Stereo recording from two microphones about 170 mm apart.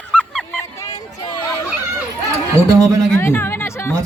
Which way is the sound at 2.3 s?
20° right (ahead or behind).